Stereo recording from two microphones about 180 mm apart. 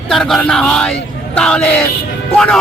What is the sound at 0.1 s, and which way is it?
A man's voice, centre (ahead or behind).